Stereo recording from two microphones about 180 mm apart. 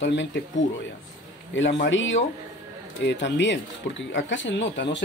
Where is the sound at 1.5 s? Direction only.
85° left.